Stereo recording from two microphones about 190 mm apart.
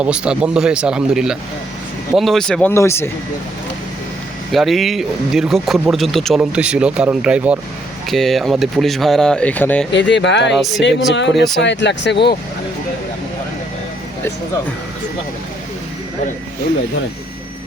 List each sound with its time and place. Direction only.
0.0 s speech: 5° right (ahead or behind); by 3.1 s 15° left (ahead or behind)
4.5 s speech: centre (ahead or behind)
9.9 s speech: 65° left (ahead or behind)
10.5 s speech: centre (ahead or behind)
10.8 s speech: 70° left (ahead or behind)